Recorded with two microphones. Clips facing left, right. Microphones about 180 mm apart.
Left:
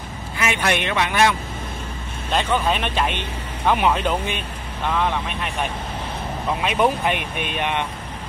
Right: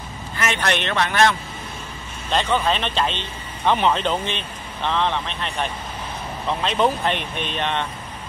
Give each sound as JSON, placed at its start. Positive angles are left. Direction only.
{"t": 0.4, "sound": "speech", "side_deg": 10}
{"t": 2.3, "sound": "speech", "side_deg": 10}